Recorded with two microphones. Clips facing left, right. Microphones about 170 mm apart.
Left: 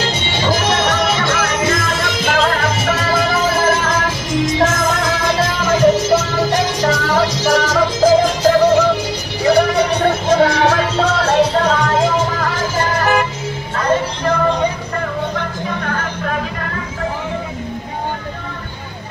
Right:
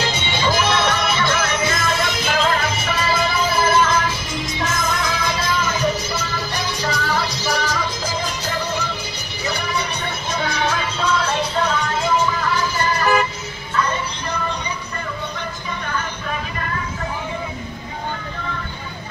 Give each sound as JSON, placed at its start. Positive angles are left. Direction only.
{"t": 0.7, "sound": "music", "side_deg": 45}
{"t": 2.4, "sound": "music", "side_deg": 65}
{"t": 3.2, "sound": "music", "side_deg": 90}
{"t": 3.6, "sound": "music", "side_deg": 45}
{"t": 4.5, "sound": "music", "side_deg": 85}
{"t": 15.3, "sound": "music", "side_deg": 70}